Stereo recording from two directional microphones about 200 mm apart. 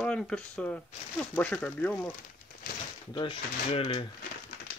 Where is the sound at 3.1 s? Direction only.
25° left (ahead or behind).